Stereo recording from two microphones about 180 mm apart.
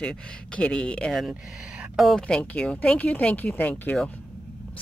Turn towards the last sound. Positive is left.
turn(degrees=10)  # may be behind; listen again after turning